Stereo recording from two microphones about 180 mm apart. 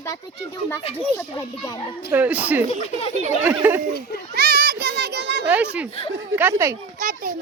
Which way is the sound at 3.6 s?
10° right (ahead or behind).